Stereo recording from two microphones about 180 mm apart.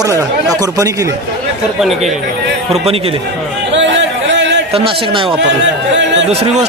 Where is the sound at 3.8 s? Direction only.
80° right.